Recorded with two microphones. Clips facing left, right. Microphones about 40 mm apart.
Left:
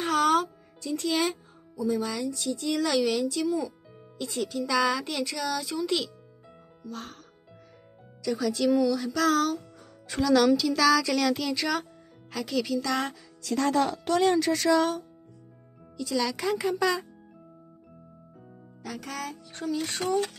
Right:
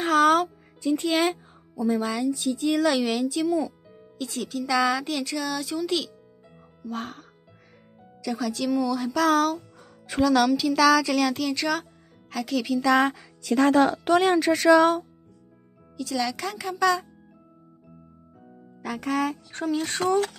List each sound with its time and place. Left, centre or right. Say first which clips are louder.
0.0 s music: right 4 dB; centre
0.7 s speech: right 4 dB; right
1.8 s speech: right 3 dB; right; by 6.1 s centre
6.9 s speech: right 6 dB; right
8.2 s speech: left 1 dB; centre
9.5 s music: right 2 dB; centre
10.4 s speech: right 2 dB; centre
12.8 s speech: right 8 dB; right
13.1 s speech: right 5 dB; right
16.0 s speech: right 1 dB; centre
18.9 s speech: right 11 dB; right